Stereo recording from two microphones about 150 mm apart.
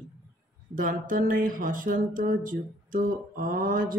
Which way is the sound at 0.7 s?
65° right (ahead or behind).